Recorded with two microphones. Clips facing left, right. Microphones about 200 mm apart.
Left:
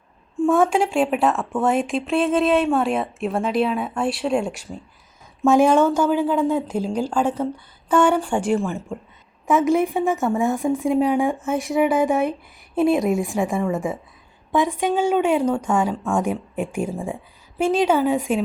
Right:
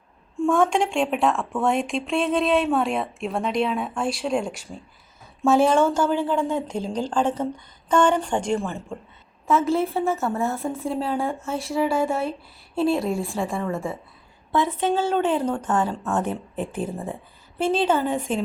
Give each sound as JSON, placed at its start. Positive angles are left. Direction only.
{"t": 0.3, "sound": "a woman's voice", "side_deg": 5}